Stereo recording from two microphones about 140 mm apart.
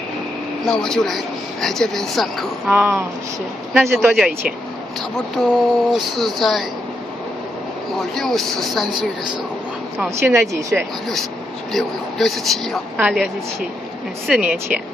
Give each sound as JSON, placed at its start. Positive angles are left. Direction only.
{"t": 0.7, "sound": "speech", "side_deg": 5}
{"t": 2.7, "sound": "a woman's voice", "side_deg": -15}
{"t": 3.7, "sound": "speech", "side_deg": 0}
{"t": 8.0, "sound": "speech", "side_deg": 0}
{"t": 10.0, "sound": "speech", "side_deg": -20}
{"t": 11.7, "sound": "a woman's voice", "side_deg": 0}
{"t": 14.4, "sound": "a woman's voice", "side_deg": -10}